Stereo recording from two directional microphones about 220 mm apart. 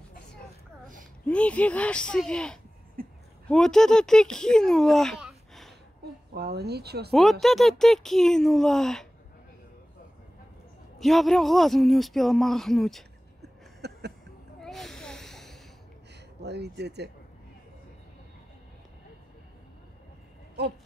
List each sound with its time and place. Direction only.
1.2 s speech: 5° left (ahead or behind)
3.0 s a sound: 40° right (ahead or behind)
3.4 s speech: centre (ahead or behind)
6.3 s speech: 45° right (ahead or behind)
7.1 s speech: centre (ahead or behind)
11.0 s speech: centre (ahead or behind)
13.4 s a sound: 50° right (ahead or behind)
14.6 s a sound: centre (ahead or behind)
16.4 s speech: 50° right (ahead or behind)